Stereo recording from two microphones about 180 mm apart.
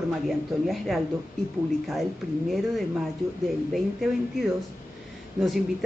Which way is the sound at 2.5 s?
Centre (ahead or behind).